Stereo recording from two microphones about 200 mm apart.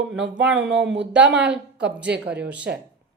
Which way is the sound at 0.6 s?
65° right (ahead or behind).